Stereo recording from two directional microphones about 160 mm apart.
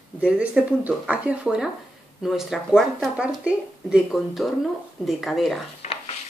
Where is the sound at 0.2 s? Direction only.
10° right (ahead or behind).